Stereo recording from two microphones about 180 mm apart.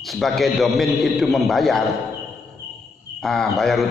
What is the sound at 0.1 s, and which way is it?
A man's voice, centre (ahead or behind).